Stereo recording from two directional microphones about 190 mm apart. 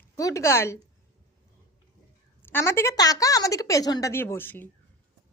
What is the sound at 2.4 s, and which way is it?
A woman's voice, 10° left (ahead or behind).